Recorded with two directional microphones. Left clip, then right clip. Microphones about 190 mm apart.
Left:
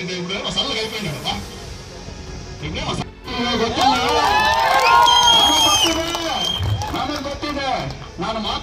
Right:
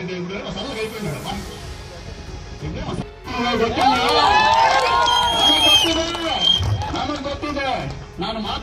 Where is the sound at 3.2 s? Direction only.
Centre (ahead or behind).